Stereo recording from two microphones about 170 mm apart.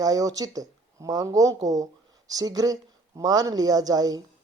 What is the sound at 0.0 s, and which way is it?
Speech, 20° right (ahead or behind).